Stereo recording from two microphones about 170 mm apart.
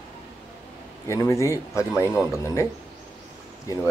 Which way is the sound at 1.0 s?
15° left (ahead or behind).